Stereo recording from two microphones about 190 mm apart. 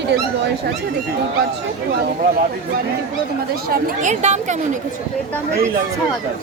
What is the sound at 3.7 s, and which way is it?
Speech, 40° right (ahead or behind).